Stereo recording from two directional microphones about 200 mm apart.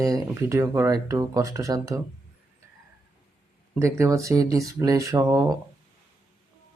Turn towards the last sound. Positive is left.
turn(degrees=-15)  # may be behind; listen again after turning